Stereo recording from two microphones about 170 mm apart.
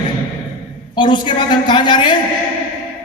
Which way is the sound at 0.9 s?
25° left (ahead or behind).